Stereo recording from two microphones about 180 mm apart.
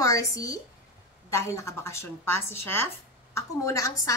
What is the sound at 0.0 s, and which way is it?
A woman's voice, 20° left (ahead or behind).